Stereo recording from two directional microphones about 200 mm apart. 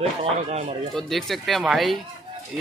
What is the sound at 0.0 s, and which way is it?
Speech, 30° right (ahead or behind).